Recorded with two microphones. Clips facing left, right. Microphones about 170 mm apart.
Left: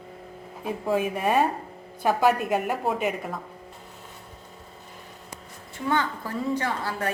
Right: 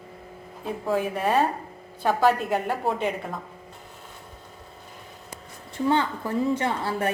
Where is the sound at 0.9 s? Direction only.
15° left (ahead or behind).